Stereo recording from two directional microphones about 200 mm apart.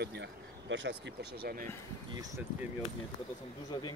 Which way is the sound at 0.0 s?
60° right (ahead or behind).